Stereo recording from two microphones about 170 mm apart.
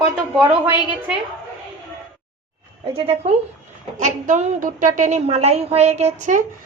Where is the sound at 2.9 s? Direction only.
35° right (ahead or behind).